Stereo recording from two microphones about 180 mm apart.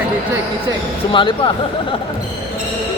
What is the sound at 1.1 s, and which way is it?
Speech, 30° left (ahead or behind).